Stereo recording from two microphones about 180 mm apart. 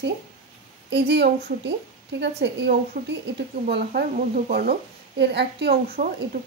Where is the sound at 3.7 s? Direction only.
60° right (ahead or behind).